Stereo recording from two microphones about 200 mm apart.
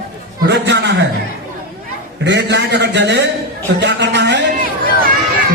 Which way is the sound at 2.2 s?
60° right (ahead or behind).